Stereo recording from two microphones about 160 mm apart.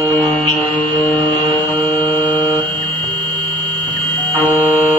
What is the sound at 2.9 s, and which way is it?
Mains hum, 30° right (ahead or behind).